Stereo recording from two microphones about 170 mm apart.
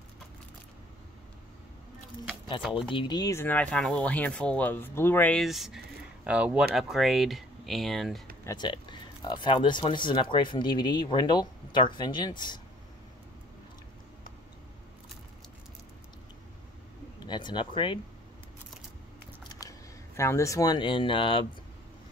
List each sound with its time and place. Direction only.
2.9 s speech: 25° left (ahead or behind); by 8.2 s centre (ahead or behind)
8.5 s speech: 25° left (ahead or behind)
17.3 s speech: 25° left (ahead or behind)
20.2 s speech: 15° left (ahead or behind)